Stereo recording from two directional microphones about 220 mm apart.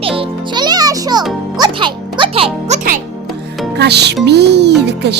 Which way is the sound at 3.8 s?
50° right (ahead or behind).